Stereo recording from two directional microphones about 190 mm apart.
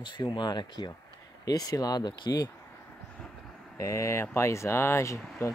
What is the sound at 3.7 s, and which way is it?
Speech, 15° left (ahead or behind).